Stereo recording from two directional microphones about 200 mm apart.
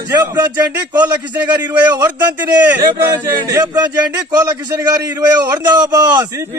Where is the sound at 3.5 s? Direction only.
15° right (ahead or behind).